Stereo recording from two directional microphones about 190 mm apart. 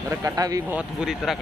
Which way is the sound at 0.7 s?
Centre (ahead or behind).